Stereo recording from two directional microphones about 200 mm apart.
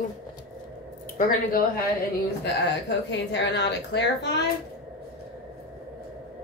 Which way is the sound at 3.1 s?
60° left (ahead or behind).